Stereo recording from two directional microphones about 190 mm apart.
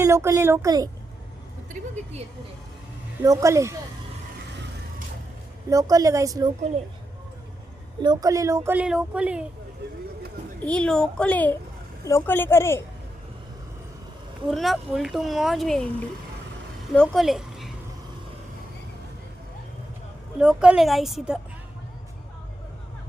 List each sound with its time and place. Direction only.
0.0 s speech: 15° right (ahead or behind)
3.2 s speech: 15° right (ahead or behind)
5.6 s speech: 15° right (ahead or behind)
8.0 s speech: 20° right (ahead or behind); by 9.5 s 5° right (ahead or behind)
10.6 s a woman's voice: 5° left (ahead or behind)
14.5 s a woman's voice: centre (ahead or behind)
20.4 s speech: 5° right (ahead or behind)